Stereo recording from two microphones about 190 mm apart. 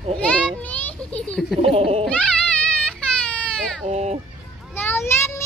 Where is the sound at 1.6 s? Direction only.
30° right (ahead or behind).